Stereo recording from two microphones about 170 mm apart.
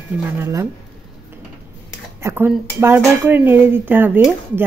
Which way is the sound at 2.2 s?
15° right (ahead or behind).